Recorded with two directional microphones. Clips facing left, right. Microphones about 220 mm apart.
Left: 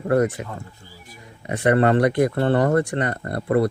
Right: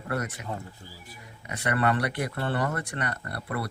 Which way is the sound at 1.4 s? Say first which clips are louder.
Left 9 dB; 30° left (ahead or behind).